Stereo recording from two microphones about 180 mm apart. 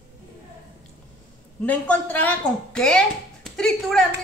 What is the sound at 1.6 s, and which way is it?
A woman's voice, 10° left (ahead or behind).